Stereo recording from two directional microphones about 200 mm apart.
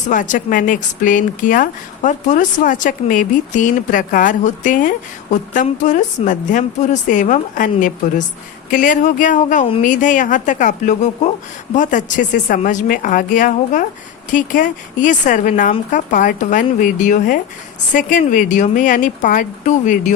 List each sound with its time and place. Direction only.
0.1 s speech: 40° left (ahead or behind)